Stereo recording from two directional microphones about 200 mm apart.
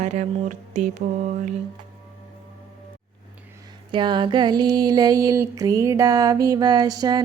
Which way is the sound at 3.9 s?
25° right (ahead or behind).